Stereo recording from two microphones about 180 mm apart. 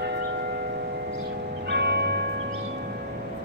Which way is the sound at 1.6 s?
65° right (ahead or behind).